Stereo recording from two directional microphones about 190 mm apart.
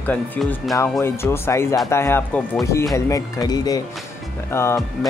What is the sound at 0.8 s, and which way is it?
Speech, 15° left (ahead or behind).